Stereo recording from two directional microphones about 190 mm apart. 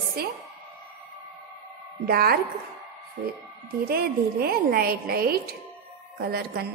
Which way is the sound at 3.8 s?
55° right (ahead or behind).